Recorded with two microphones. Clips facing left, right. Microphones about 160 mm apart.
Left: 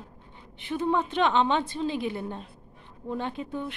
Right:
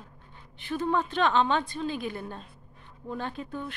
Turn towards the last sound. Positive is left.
turn(degrees=20)  # may be behind; listen again after turning